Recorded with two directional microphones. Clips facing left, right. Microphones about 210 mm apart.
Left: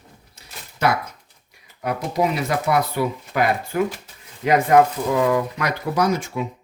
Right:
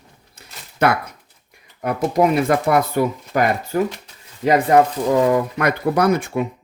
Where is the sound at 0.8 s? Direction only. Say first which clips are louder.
Right 3 dB; 55° right (ahead or behind); by 4.6 s 35° right (ahead or behind).